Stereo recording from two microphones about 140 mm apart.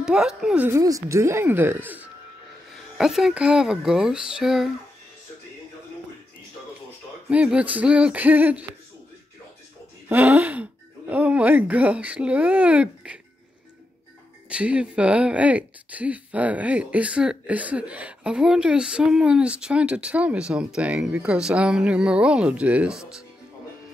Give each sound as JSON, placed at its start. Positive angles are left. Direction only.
{"t": 0.0, "sound": "speech", "side_deg": -5}
{"t": 0.7, "sound": "speech", "side_deg": -25}
{"t": 3.0, "sound": "speech", "side_deg": -5}
{"t": 7.2, "sound": "speech", "side_deg": -10}
{"t": 10.0, "sound": "speech", "side_deg": -15}
{"t": 14.5, "sound": "speech", "side_deg": -10}